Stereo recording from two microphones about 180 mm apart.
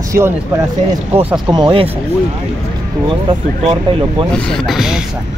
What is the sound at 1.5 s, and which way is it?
Speech, 25° right (ahead or behind).